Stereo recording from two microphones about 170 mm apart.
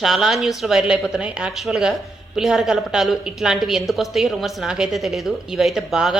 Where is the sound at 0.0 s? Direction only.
Centre (ahead or behind).